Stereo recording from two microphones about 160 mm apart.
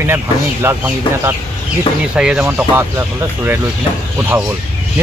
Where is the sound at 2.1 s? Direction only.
5° right (ahead or behind).